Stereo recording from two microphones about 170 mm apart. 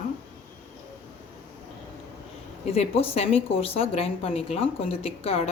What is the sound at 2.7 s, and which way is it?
A woman's voice, 35° left (ahead or behind).